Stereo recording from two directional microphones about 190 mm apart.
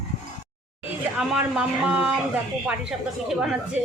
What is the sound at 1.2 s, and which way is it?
A woman's voice, 5° right (ahead or behind).